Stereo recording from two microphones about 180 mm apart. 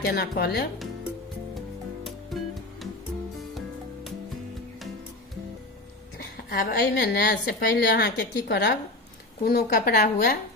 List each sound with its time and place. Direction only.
0.0 s a woman's voice: 60° left (ahead or behind)
2.3 s music: centre (ahead or behind)
6.1 s a woman's voice: 55° left (ahead or behind)
9.4 s a woman's voice: 55° left (ahead or behind)